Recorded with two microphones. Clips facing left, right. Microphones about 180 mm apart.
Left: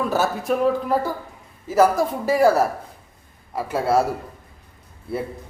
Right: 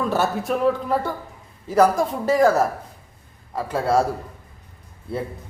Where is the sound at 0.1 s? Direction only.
Centre (ahead or behind).